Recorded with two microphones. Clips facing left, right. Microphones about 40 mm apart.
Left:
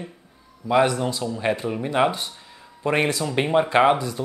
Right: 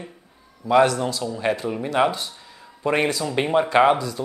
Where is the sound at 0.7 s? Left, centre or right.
Centre.